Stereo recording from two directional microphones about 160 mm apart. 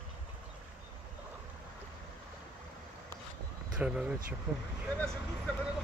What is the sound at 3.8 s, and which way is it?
Speech, 5° right (ahead or behind).